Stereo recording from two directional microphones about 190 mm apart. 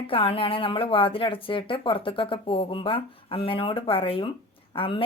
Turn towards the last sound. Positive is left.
turn(degrees=30)  # may be behind; listen again after turning